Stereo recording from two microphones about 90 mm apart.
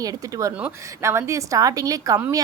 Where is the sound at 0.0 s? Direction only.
40° right (ahead or behind).